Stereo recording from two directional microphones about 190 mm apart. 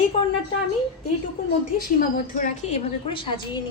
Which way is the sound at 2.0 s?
45° left (ahead or behind).